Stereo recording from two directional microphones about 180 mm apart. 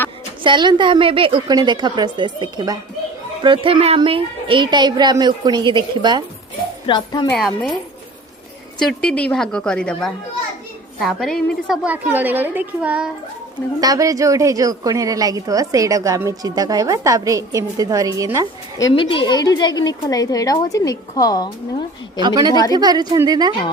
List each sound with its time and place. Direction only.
0.4 s a woman's voice: 25° right (ahead or behind)
6.8 s a woman's voice: 25° left (ahead or behind)
7.3 s a woman's voice: centre (ahead or behind)
8.8 s a woman's voice: 5° left (ahead or behind)
11.9 s a woman's voice: 10° right (ahead or behind)
13.8 s a woman's voice: 20° right (ahead or behind)
18.9 s a woman's voice: 30° left (ahead or behind)
22.2 s a woman's voice: 20° right (ahead or behind)